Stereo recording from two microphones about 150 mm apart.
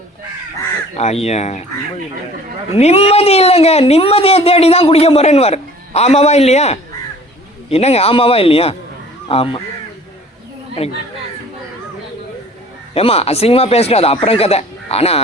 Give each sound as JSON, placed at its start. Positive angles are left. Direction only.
{"t": 0.9, "sound": "speech", "side_deg": 45}
{"t": 2.7, "sound": "speech", "side_deg": 40}
{"t": 10.8, "sound": "speech", "side_deg": 45}
{"t": 12.9, "sound": "speech", "side_deg": 40}